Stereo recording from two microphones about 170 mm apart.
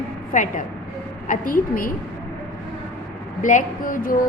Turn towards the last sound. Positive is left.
turn(degrees=55)  # may be behind; listen again after turning